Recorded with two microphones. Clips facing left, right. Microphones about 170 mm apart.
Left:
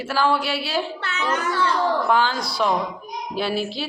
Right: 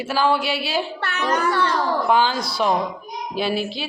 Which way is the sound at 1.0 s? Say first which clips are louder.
Right 2 dB; 60° right (ahead or behind).